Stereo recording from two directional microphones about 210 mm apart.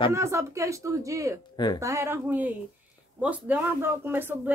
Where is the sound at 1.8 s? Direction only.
15° right (ahead or behind).